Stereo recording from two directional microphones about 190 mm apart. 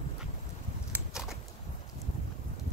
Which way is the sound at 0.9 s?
5° right (ahead or behind).